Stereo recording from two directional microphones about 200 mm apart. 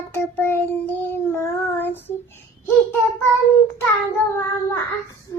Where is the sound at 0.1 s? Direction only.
10° left (ahead or behind).